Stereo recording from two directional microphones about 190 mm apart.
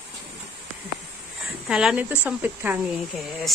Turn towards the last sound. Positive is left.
turn(degrees=0)  # may be behind; listen again after turning